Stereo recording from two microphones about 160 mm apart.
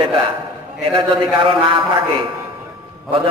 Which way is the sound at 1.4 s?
30° right (ahead or behind).